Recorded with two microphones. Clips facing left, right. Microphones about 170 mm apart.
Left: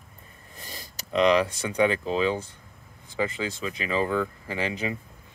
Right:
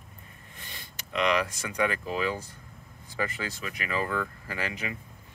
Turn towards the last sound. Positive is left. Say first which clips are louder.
# left 5 dB
turn(degrees=25)  # may be behind; listen again after turning